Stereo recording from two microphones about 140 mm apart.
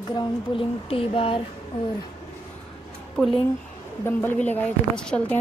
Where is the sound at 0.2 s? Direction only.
40° left (ahead or behind).